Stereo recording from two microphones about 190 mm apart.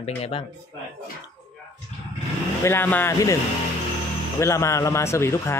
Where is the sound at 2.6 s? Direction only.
10° left (ahead or behind).